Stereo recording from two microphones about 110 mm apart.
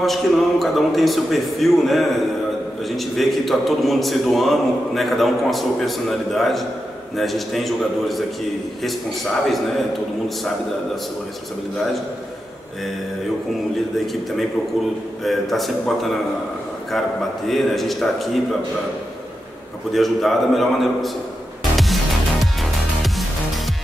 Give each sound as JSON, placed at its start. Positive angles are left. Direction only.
{"t": 0.0, "sound": "a man's voice", "side_deg": 0}
{"t": 3.2, "sound": "a man's voice", "side_deg": 0}
{"t": 15.2, "sound": "a man's voice", "side_deg": 0}
{"t": 17.5, "sound": "a man's voice", "side_deg": 0}
{"t": 19.9, "sound": "a man's voice", "side_deg": 0}
{"t": 21.7, "sound": "music", "side_deg": 0}